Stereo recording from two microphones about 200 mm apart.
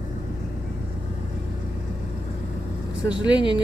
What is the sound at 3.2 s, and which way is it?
Speech, 25° left (ahead or behind).